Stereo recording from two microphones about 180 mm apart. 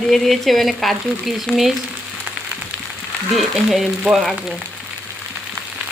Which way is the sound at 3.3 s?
Centre (ahead or behind).